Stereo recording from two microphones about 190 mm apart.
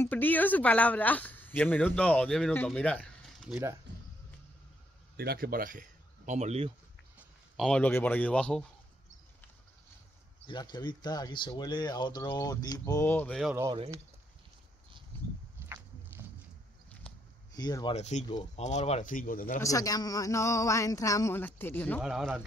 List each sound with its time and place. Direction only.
0.0 s speech: 10° left (ahead or behind)
5.1 s speech: 55° right (ahead or behind); by 6.7 s 35° right (ahead or behind)
7.2 s speech: centre (ahead or behind)
10.4 s speech: 20° left (ahead or behind)
15.6 s walk: 10° right (ahead or behind)
17.6 s speech: 20° left (ahead or behind)
17.9 s speech: 35° left (ahead or behind)
19.6 s speech: 20° left (ahead or behind)
22.0 s a man's voice: centre (ahead or behind)